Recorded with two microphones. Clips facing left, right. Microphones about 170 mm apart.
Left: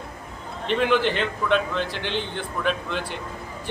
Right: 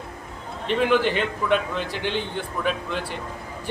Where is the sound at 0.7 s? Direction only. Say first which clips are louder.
Right 1 dB; 5° right (ahead or behind).